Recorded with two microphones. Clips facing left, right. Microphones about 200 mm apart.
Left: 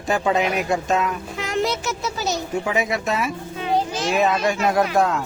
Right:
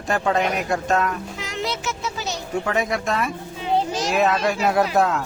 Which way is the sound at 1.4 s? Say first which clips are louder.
Left 5 dB; 50° left (ahead or behind).